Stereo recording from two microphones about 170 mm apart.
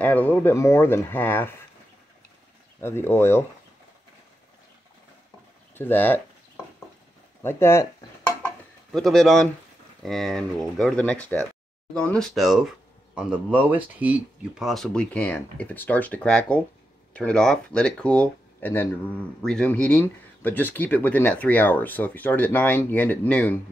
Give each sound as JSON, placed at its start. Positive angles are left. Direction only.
{"t": 0.0, "sound": "speech", "side_deg": 10}
{"t": 2.8, "sound": "speech", "side_deg": 15}
{"t": 5.8, "sound": "a sound", "side_deg": 10}
{"t": 7.4, "sound": "speech", "side_deg": 15}
{"t": 8.9, "sound": "speech", "side_deg": 0}